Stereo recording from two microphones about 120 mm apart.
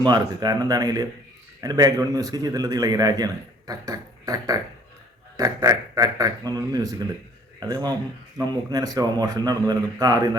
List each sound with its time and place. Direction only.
0.0 s a man's voice: 35° right (ahead or behind)